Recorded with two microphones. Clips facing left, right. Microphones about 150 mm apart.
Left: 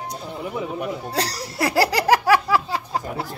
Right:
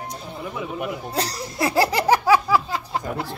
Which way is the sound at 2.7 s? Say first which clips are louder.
Even; 35° left (ahead or behind).